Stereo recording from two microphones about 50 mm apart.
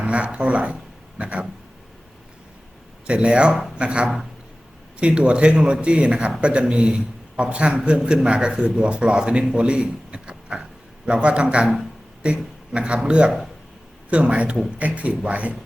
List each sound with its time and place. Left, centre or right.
0.0 s a man's voice: right
3.1 s a man's voice: centre
11.6 s a man's voice: centre
12.2 s a man's voice: right